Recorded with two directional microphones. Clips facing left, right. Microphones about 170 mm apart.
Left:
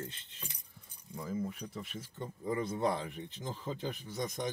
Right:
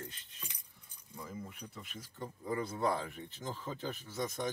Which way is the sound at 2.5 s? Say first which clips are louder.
Left 1 dB; 20° left (ahead or behind).